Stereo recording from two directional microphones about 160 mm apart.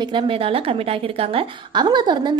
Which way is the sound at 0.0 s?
30° right (ahead or behind).